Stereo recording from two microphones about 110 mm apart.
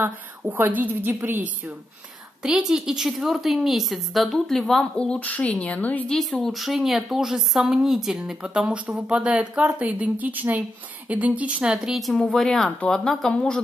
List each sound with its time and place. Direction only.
0.4 s speech: 15° right (ahead or behind)
2.4 s a woman's voice: 5° right (ahead or behind); by 6.1 s 15° left (ahead or behind)
6.4 s a woman's voice: centre (ahead or behind)